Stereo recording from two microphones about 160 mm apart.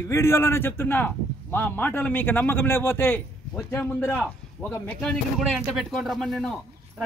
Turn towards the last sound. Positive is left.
turn(degrees=0)  # may be behind; listen again after turning